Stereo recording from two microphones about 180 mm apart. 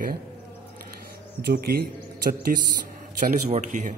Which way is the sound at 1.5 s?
60° right (ahead or behind).